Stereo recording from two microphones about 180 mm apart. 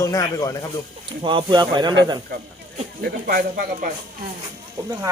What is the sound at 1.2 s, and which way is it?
Speech, 25° right (ahead or behind).